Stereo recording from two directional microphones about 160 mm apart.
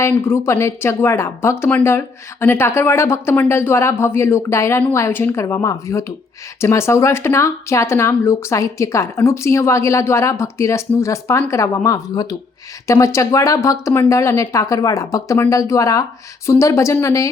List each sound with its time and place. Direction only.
0.0 s a woman's voice: 15° left (ahead or behind)